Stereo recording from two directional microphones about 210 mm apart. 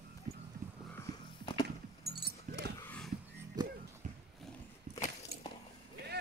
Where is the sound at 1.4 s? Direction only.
20° left (ahead or behind).